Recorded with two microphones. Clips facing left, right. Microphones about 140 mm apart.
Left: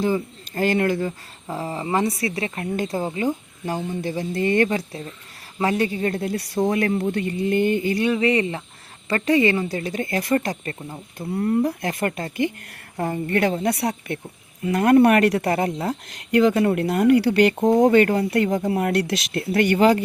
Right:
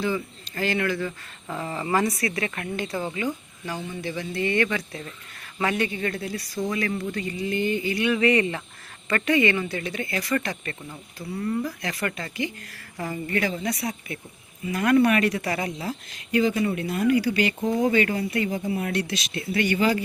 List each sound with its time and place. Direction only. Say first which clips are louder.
0.0 s speech: left 5 dB; 45° left (ahead or behind)
1.5 s speech: left 2 dB; 30° left (ahead or behind)
2.7 s a woman's voice: left 6 dB; 40° left (ahead or behind)
6.2 s speech: left 7 dB; 60° left (ahead or behind); by 8.1 s 45° left (ahead or behind)
8.1 s a woman's voice: left 1 dB; 25° left (ahead or behind)
11.2 s speech: left 6 dB; 50° left (ahead or behind)
16.4 s speech: left 6 dB; 65° left (ahead or behind)
17.6 s speech: left 7 dB; 45° left (ahead or behind); by 18.9 s 75° left (ahead or behind)
19.3 s speech: left 5 dB; 55° left (ahead or behind)